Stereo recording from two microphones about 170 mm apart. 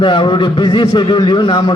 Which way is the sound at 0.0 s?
25° left (ahead or behind).